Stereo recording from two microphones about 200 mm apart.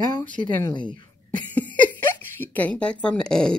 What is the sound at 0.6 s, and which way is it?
Speech, 20° left (ahead or behind).